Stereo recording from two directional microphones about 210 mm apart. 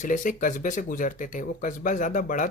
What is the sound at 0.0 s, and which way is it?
Speech, 40° left (ahead or behind).